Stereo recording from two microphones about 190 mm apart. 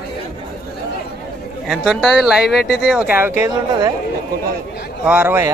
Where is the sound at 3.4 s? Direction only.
20° right (ahead or behind).